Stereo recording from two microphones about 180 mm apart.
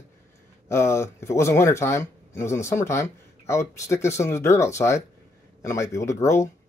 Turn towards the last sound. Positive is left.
turn(degrees=15)  # may be behind; listen again after turning